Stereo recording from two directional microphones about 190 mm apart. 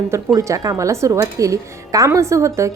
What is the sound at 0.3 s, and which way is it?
A woman's voice, 15° right (ahead or behind).